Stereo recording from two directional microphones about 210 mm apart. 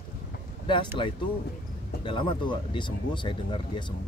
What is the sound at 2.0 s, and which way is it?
Speech, 25° left (ahead or behind).